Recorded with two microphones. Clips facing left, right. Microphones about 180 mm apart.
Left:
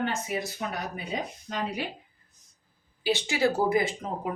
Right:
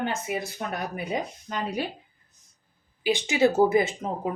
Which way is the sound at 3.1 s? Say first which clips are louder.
Right 3 dB; 20° right (ahead or behind).